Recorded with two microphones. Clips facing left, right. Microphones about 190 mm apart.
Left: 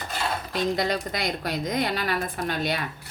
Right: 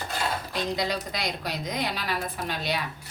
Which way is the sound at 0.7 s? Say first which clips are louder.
Left 3 dB; 50° left (ahead or behind).